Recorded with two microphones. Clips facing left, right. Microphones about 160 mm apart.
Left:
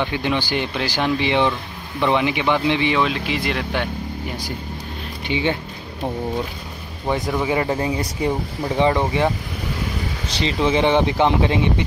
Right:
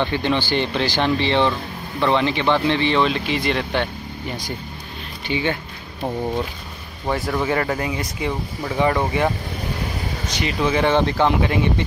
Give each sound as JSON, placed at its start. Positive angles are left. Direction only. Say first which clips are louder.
{"t": 0.0, "sound": "speech", "louder": "right 1 dB", "side_deg": 10}
{"t": 5.3, "sound": "speech", "louder": "left 1 dB", "side_deg": 20}
{"t": 7.1, "sound": "speech", "louder": "left 1 dB", "side_deg": 20}
{"t": 7.8, "sound": "speech", "louder": "left 3 dB", "side_deg": 35}
{"t": 8.3, "sound": "speech", "louder": "left 3 dB", "side_deg": 20}